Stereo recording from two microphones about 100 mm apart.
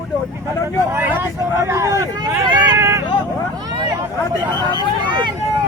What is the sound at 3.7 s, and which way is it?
Speech, 45° right (ahead or behind).